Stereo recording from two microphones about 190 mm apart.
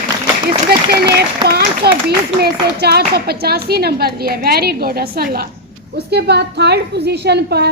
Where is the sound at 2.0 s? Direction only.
55° right (ahead or behind).